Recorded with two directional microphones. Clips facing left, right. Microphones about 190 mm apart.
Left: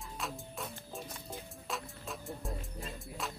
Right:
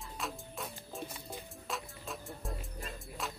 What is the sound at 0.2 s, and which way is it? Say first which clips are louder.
Music: even; centre (ahead or behind).